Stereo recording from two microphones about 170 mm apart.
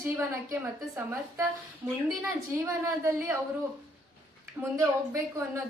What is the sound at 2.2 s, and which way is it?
A woman's voice, 15° right (ahead or behind).